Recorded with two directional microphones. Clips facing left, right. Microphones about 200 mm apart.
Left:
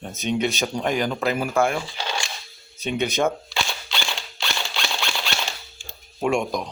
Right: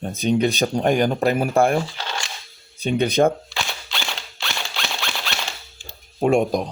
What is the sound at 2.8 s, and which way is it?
Speech, 35° right (ahead or behind).